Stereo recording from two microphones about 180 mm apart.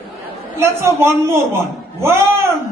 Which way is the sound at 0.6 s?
15° right (ahead or behind).